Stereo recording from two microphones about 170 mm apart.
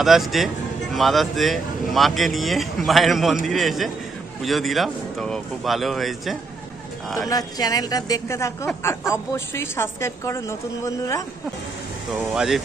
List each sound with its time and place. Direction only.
0.0 s speech: centre (ahead or behind)
7.2 s a woman's voice: 20° left (ahead or behind)
12.4 s speech: centre (ahead or behind)